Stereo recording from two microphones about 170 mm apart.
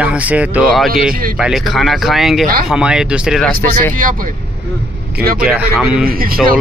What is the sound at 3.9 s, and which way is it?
Speech, 55° right (ahead or behind).